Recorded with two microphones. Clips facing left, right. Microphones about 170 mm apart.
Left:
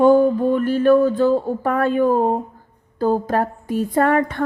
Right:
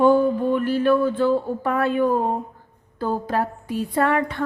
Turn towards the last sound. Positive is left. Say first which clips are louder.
# left 4 dB
turn(degrees=45)  # may be behind; listen again after turning